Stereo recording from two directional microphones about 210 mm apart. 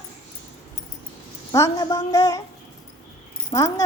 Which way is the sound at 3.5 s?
15° left (ahead or behind).